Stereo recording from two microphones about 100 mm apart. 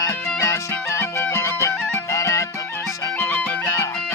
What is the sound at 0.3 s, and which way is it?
Music, 30° left (ahead or behind).